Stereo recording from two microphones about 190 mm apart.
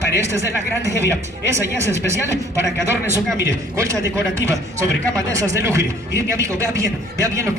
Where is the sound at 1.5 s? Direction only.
15° right (ahead or behind).